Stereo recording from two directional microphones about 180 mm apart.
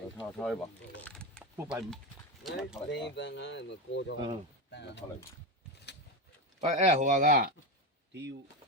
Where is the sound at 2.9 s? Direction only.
75° left (ahead or behind).